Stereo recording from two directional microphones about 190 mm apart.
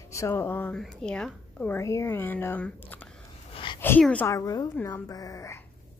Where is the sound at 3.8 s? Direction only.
10° left (ahead or behind).